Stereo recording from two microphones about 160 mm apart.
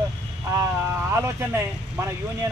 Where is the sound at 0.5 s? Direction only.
15° right (ahead or behind).